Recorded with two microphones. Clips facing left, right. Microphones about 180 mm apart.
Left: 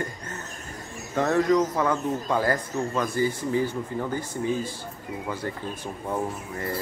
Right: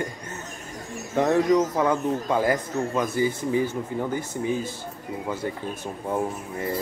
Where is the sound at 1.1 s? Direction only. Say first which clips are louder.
Right 2 dB; 15° right (ahead or behind).